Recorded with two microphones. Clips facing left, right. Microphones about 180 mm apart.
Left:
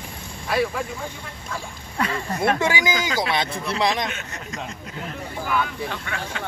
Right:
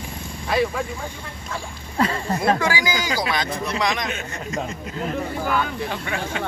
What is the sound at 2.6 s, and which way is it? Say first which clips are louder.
Speech: left 1 dB; 20° left (ahead or behind).